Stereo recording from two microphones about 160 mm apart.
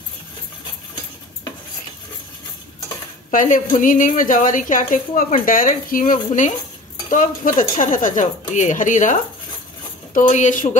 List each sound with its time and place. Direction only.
3.3 s a woman's voice: 55° left (ahead or behind)